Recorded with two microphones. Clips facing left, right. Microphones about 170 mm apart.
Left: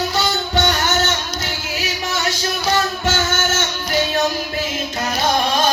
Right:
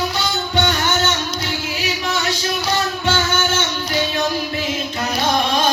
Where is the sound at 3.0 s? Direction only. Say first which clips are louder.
Right 1 dB; 45° left (ahead or behind).